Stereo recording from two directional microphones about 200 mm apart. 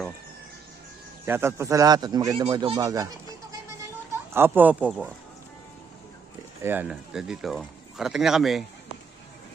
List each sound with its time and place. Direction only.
1.2 s speech: 10° right (ahead or behind)
4.4 s speech: 10° right (ahead or behind)
6.6 s speech: 10° right (ahead or behind)